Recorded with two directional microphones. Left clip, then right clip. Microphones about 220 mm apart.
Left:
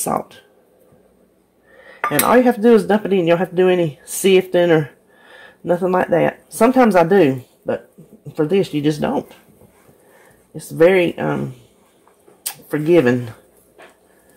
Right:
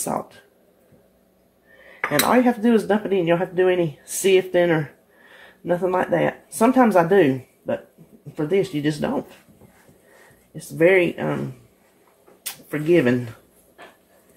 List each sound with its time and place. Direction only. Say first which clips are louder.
0.1 s speech: left 5 dB; 45° left (ahead or behind)
2.2 s speech: left 7 dB; 40° left (ahead or behind)
10.8 s speech: left 4 dB; 40° left (ahead or behind)
12.7 s speech: left 4 dB; 40° left (ahead or behind)